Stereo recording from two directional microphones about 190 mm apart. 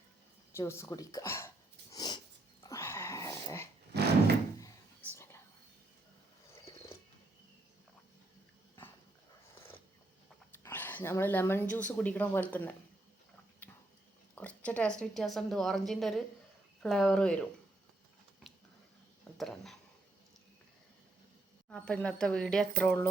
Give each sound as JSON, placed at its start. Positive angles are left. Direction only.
{"t": 0.5, "sound": "speech", "side_deg": 15}
{"t": 1.9, "sound": "sniff", "side_deg": 20}
{"t": 2.6, "sound": "dog", "side_deg": 15}
{"t": 3.9, "sound": "a sound", "side_deg": -60}
{"t": 5.1, "sound": "whispering", "side_deg": 15}
{"t": 10.5, "sound": "a sound", "side_deg": 10}
{"t": 11.7, "sound": "speech", "side_deg": 5}
{"t": 13.6, "sound": "a sound", "side_deg": 5}
{"t": 14.3, "sound": "speech", "side_deg": 5}
{"t": 18.5, "sound": "a sound", "side_deg": 0}
{"t": 19.4, "sound": "speech", "side_deg": 0}
{"t": 21.7, "sound": "speech", "side_deg": 5}